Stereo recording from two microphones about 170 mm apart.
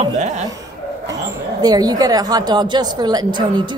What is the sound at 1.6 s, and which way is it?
A woman's voice, 20° right (ahead or behind).